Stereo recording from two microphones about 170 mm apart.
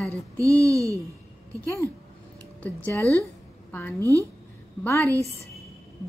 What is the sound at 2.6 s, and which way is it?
Speech, 10° left (ahead or behind).